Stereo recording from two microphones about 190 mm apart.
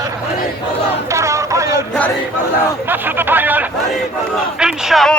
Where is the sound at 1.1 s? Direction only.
15° right (ahead or behind).